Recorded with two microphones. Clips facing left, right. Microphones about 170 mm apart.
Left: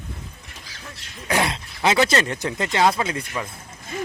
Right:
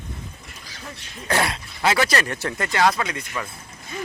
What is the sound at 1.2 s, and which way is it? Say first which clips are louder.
Speech: even; 15° left (ahead or behind).